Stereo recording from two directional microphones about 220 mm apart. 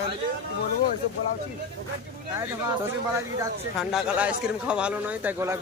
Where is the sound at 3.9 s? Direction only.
5° right (ahead or behind).